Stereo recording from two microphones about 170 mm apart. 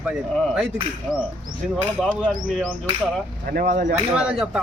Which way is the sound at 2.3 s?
5° left (ahead or behind).